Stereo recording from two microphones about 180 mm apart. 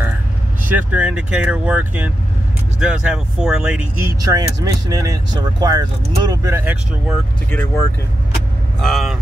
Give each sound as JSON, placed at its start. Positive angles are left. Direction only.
{"t": 0.7, "sound": "speech", "side_deg": -10}
{"t": 4.2, "sound": "speech", "side_deg": -20}
{"t": 7.5, "sound": "speech", "side_deg": 15}
{"t": 8.7, "sound": "speech", "side_deg": 0}